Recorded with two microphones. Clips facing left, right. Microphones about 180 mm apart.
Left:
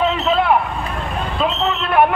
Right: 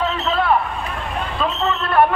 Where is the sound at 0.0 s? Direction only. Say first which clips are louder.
Left 3 dB; 15° left (ahead or behind).